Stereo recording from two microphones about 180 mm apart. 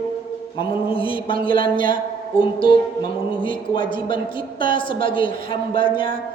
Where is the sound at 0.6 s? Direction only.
30° left (ahead or behind).